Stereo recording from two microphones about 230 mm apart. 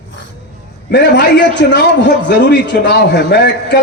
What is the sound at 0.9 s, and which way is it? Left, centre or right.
Speech, left.